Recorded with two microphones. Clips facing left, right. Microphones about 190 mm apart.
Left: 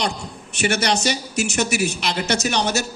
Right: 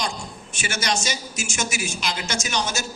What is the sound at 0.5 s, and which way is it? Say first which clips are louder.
A man's voice: left 6 dB; 65° left (ahead or behind).